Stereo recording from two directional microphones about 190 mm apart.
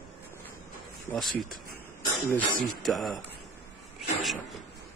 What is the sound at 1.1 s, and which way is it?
Speech, centre (ahead or behind).